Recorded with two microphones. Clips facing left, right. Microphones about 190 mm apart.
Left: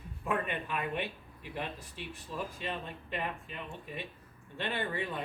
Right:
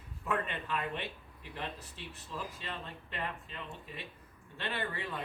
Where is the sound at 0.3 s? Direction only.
15° left (ahead or behind).